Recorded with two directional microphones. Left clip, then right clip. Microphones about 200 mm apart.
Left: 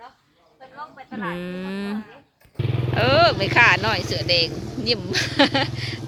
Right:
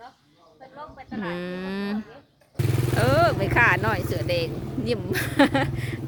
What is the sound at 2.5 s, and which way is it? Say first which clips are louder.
Motorcycle: even; 50° right (ahead or behind).